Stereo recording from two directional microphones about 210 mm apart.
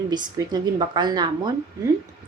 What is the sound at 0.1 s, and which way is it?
A woman's voice, 20° right (ahead or behind).